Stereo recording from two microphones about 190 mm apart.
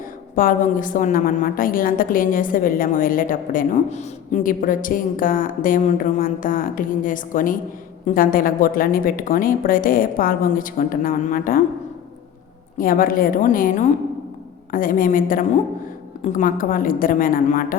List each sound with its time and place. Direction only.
0.3 s a woman's voice: 45° left (ahead or behind)
12.7 s a woman's voice: 45° left (ahead or behind)